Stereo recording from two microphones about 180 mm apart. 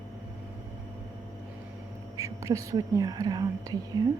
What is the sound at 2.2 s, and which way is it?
Speech, 15° right (ahead or behind).